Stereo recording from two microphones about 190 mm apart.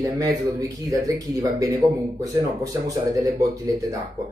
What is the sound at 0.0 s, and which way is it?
Speech, 20° right (ahead or behind).